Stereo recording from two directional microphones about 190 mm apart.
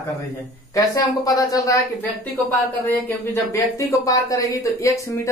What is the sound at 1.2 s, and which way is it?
Speech, 20° left (ahead or behind).